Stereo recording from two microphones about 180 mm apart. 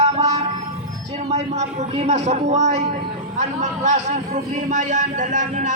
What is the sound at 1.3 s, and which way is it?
Speech, 35° right (ahead or behind).